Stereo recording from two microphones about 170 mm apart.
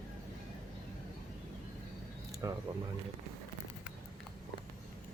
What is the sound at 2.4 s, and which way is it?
Speech, 20° right (ahead or behind).